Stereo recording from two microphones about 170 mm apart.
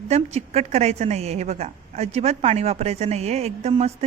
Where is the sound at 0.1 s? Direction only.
40° right (ahead or behind).